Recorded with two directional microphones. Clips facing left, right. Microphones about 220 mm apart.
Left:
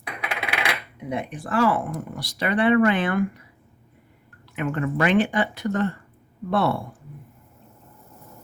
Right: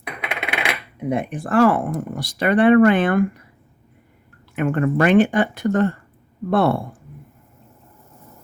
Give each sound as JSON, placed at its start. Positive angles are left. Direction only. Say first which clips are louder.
{"t": 0.2, "sound": "coin", "louder": "right 2 dB", "side_deg": -20}
{"t": 1.1, "sound": "speech", "louder": "right 6 dB", "side_deg": -50}
{"t": 4.5, "sound": "speech", "louder": "right 6 dB", "side_deg": -50}